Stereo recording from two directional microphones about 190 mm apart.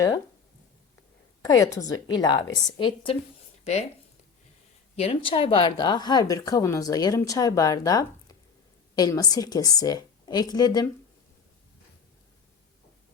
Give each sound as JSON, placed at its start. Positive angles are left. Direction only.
{"t": 1.5, "sound": "speech", "side_deg": 20}
{"t": 4.9, "sound": "speech", "side_deg": 30}